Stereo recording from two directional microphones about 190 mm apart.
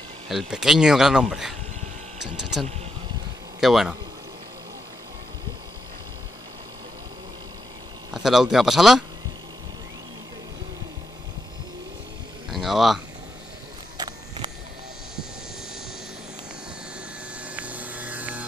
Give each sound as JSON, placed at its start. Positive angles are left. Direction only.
{"t": 0.3, "sound": "speech", "side_deg": 0}
{"t": 3.6, "sound": "speech", "side_deg": 0}
{"t": 8.1, "sound": "speech", "side_deg": 0}
{"t": 12.4, "sound": "speech", "side_deg": 0}
{"t": 13.9, "sound": "a sound", "side_deg": -25}
{"t": 17.4, "sound": "vehicle", "side_deg": -5}